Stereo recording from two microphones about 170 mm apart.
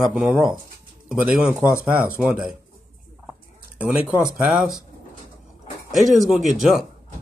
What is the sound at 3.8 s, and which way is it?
Speech, 5° right (ahead or behind).